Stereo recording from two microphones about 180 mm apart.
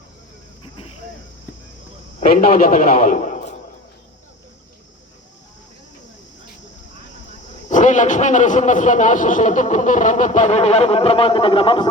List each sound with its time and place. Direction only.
2.2 s speech: 50° left (ahead or behind)
7.7 s speech: 45° left (ahead or behind); by 11.9 s 30° left (ahead or behind)